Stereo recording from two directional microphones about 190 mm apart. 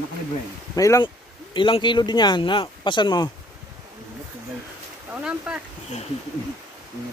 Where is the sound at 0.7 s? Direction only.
20° left (ahead or behind).